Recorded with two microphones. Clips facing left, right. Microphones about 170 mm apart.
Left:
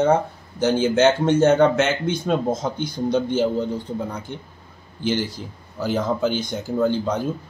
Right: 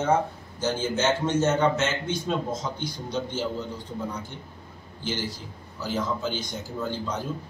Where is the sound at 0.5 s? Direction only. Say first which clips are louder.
Left 9 dB; 70° left (ahead or behind).